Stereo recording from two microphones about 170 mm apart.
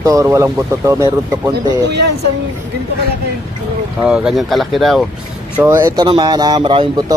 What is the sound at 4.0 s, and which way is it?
Speech, 5° right (ahead or behind).